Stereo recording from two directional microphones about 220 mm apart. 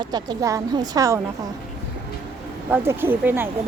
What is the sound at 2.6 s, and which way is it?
Speech, 10° right (ahead or behind).